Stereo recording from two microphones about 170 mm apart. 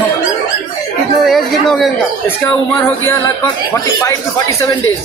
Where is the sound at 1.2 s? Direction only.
Centre (ahead or behind).